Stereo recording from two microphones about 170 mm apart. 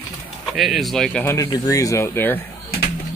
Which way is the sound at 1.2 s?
15° left (ahead or behind).